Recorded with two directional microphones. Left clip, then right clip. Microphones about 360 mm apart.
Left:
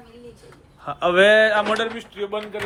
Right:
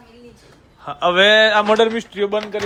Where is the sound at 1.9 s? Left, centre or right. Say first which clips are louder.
Right 7 dB; right.